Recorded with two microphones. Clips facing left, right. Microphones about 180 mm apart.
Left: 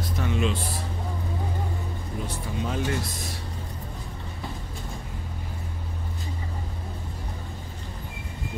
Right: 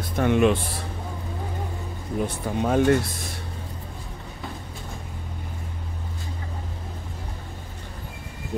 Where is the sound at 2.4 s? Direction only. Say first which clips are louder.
Right 10 dB; 50° right (ahead or behind).